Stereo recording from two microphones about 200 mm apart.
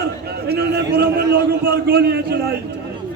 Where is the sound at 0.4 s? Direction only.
55° right (ahead or behind).